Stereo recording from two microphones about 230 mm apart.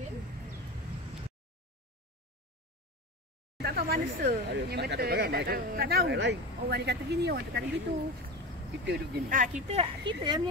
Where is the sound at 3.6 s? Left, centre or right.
Right.